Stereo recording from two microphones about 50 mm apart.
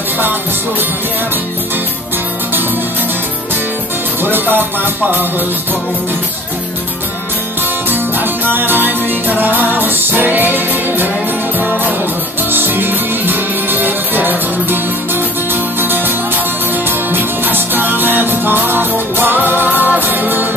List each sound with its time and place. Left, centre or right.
0.2 s music: right
4.2 s music: right
7.9 s music: right
12.4 s music: right